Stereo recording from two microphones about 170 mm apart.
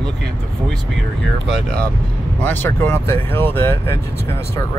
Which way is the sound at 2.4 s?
10° left (ahead or behind).